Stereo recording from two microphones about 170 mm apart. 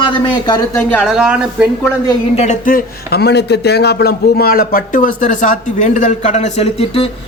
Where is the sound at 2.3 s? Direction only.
45° left (ahead or behind).